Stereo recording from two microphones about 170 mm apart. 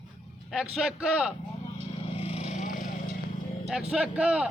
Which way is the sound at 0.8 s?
5° right (ahead or behind).